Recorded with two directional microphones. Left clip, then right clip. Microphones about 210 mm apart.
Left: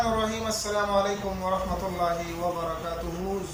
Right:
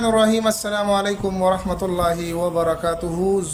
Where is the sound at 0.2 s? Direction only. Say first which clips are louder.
Right 11 dB; 55° right (ahead or behind).